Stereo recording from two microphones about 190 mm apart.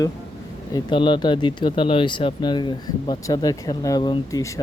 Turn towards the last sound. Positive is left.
turn(degrees=20)  # may be behind; listen again after turning